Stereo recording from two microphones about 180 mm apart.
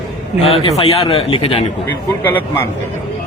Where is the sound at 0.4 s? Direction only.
35° left (ahead or behind).